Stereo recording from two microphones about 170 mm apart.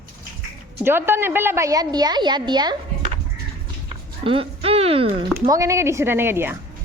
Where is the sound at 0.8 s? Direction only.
15° right (ahead or behind).